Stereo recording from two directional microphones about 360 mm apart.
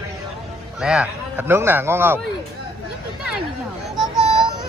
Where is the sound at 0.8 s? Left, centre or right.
Centre.